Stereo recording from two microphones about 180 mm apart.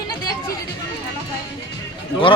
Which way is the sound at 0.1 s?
20° left (ahead or behind).